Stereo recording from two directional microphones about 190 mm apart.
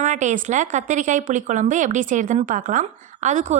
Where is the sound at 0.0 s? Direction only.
40° right (ahead or behind).